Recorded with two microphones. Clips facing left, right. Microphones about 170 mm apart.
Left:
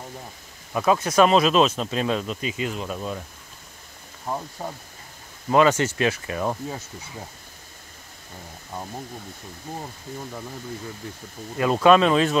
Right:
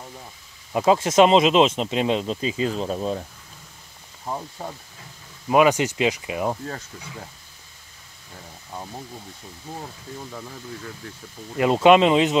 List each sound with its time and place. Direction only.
0.7 s speech: 25° right (ahead or behind)
5.5 s speech: 15° right (ahead or behind)
11.5 s speech: 20° right (ahead or behind)